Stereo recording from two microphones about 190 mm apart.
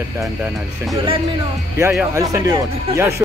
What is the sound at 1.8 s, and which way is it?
Speech, 15° right (ahead or behind).